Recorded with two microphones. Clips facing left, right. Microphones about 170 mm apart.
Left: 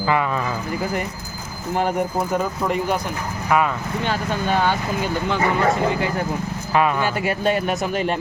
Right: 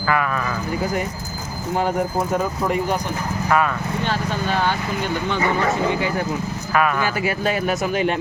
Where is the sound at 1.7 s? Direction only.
Centre (ahead or behind).